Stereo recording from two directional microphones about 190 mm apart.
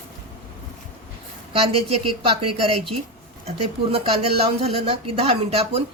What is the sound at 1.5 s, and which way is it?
Speech, 30° right (ahead or behind).